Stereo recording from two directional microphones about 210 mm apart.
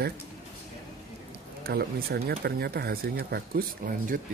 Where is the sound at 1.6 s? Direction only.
50° right (ahead or behind).